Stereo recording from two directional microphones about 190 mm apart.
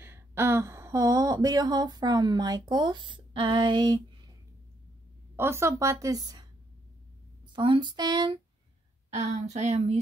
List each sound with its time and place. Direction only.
0.0 s speech: 15° right (ahead or behind)
5.3 s a woman's voice: 10° right (ahead or behind)
7.5 s speech: 25° right (ahead or behind)
9.1 s speech: 35° right (ahead or behind)